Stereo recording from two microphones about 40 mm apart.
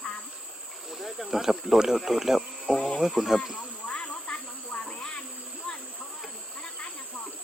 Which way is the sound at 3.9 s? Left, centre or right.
Left.